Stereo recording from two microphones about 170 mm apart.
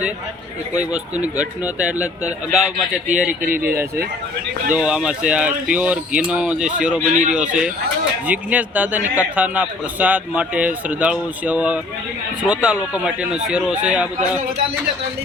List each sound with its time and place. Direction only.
0.8 s a man's voice: 5° right (ahead or behind)
3.1 s speech: 50° right (ahead or behind)
4.7 s speech: 5° right (ahead or behind)
7.1 s speech: 45° right (ahead or behind)
7.3 s a man's voice: 5° right (ahead or behind)